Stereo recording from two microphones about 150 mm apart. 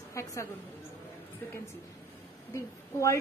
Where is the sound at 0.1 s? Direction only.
20° left (ahead or behind).